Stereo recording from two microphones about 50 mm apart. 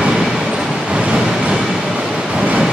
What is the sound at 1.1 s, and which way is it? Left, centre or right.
Train, centre.